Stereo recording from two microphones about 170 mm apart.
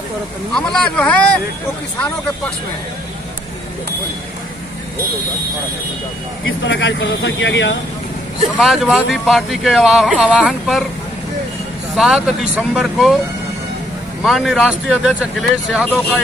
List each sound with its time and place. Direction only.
0.6 s speech: 5° left (ahead or behind)
6.6 s speech: 90° left
8.5 s speech: centre (ahead or behind)
11.9 s speech: centre (ahead or behind)
14.2 s speech: centre (ahead or behind)